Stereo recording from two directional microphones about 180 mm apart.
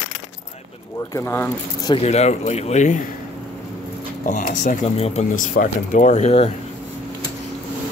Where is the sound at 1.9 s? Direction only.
35° left (ahead or behind).